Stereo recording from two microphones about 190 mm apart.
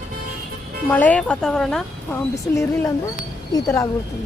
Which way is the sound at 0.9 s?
10° left (ahead or behind).